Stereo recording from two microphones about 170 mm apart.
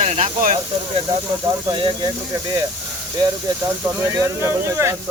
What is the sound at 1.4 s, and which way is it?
Speech, 25° right (ahead or behind).